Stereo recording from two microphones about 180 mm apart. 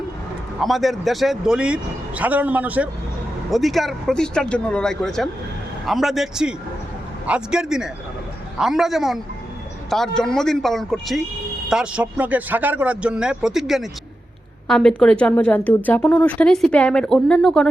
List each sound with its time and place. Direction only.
0.6 s a woman's voice: centre (ahead or behind)